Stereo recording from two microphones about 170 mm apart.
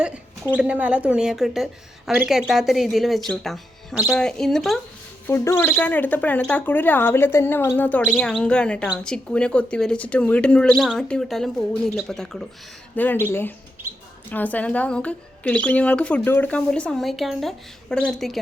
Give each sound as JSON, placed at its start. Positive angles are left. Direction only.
{"t": 0.0, "sound": "a woman's voice", "side_deg": -5}
{"t": 5.2, "sound": "speech", "side_deg": 15}